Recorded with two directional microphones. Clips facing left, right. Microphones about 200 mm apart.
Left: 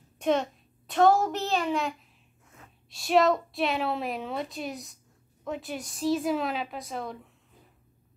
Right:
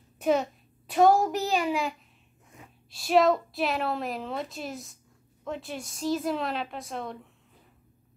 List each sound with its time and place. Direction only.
0.2 s a child's voice: 5° right (ahead or behind)
2.5 s a sound: 15° right (ahead or behind)
2.9 s a woman's voice: centre (ahead or behind)